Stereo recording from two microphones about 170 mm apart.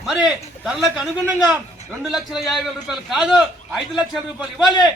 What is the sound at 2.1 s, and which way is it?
A man's voice, centre (ahead or behind).